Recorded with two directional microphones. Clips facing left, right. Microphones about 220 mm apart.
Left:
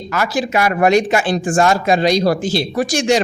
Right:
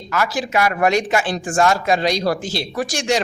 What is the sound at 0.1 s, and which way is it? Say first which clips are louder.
A man's voice: left 2 dB; 25° left (ahead or behind).